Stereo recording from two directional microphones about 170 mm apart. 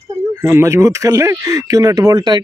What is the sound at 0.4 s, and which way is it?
Speech, 15° right (ahead or behind).